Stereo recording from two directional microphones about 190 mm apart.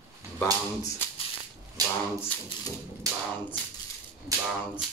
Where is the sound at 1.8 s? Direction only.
20° right (ahead or behind).